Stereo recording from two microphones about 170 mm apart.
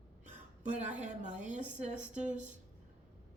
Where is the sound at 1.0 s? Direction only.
45° right (ahead or behind).